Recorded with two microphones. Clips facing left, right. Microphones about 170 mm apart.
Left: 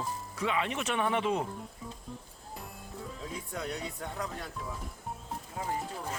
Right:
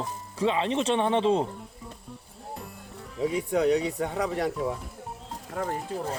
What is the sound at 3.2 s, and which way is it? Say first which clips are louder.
Speech: right 16 dB; 80° right.